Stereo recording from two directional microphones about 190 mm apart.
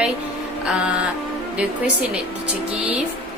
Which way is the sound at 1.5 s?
5° right (ahead or behind).